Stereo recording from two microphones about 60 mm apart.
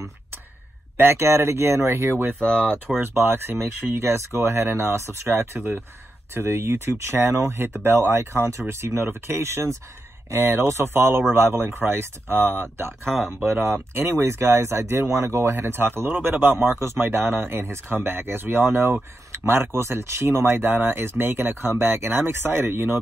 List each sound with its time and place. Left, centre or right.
0.9 s speech: right
14.0 s speech: right
15.5 s speech: right